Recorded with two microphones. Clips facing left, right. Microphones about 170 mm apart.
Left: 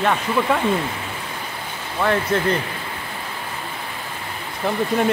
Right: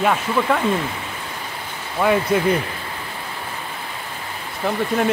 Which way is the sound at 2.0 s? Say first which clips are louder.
Right 2 dB; 10° right (ahead or behind).